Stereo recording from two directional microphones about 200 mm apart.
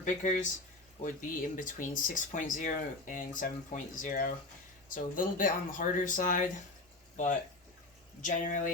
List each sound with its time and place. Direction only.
0.0 s speech: 40° left (ahead or behind)
8.2 s speech: 40° left (ahead or behind)